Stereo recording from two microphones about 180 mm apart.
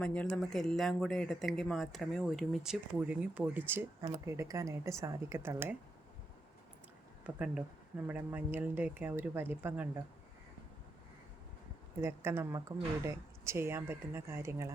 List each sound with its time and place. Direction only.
0.0 s speech: 5° left (ahead or behind); by 5.7 s 15° right (ahead or behind)
7.3 s speech: 5° right (ahead or behind)
12.0 s speech: 15° right (ahead or behind)